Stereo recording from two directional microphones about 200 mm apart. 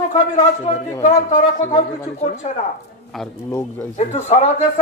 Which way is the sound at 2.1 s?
35° left (ahead or behind).